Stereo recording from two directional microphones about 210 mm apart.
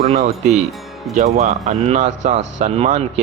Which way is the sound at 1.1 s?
35° right (ahead or behind).